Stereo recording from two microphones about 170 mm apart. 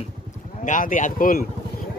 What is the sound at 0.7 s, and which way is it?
Speech, 50° left (ahead or behind).